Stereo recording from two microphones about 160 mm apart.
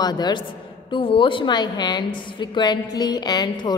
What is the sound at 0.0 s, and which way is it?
A woman's voice, 25° left (ahead or behind).